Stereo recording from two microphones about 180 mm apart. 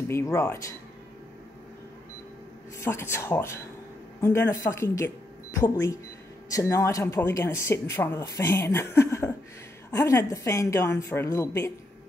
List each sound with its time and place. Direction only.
0.1 s speech: 15° left (ahead or behind)
2.8 s speech: 15° left (ahead or behind)